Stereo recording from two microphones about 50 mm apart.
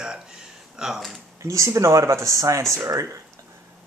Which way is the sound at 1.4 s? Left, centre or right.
Right.